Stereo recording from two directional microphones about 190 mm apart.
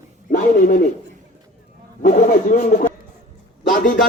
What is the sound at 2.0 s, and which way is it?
Speech, 45° left (ahead or behind).